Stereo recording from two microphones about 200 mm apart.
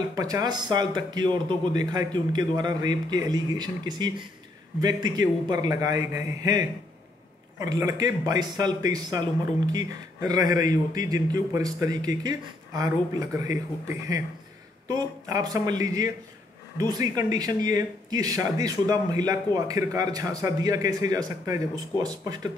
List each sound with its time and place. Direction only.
0.1 s speech: 20° right (ahead or behind)